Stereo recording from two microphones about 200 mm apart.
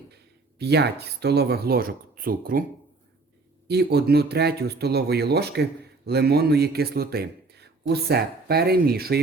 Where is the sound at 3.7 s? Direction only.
55° right (ahead or behind).